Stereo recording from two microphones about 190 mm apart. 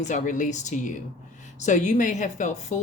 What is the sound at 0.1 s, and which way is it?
Speech, 40° left (ahead or behind).